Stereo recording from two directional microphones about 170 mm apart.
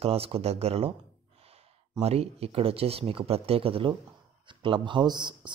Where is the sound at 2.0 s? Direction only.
35° right (ahead or behind).